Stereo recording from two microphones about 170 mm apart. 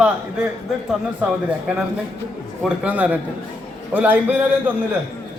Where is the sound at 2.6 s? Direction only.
10° right (ahead or behind).